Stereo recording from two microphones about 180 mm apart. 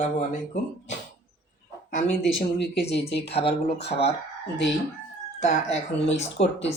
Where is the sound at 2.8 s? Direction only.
70° left (ahead or behind).